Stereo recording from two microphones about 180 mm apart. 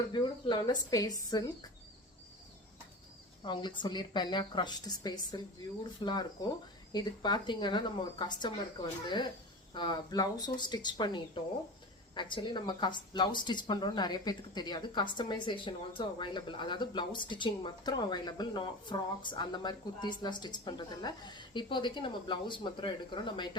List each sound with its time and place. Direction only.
0.1 s speech: 25° left (ahead or behind)
3.4 s speech: 25° left (ahead or behind)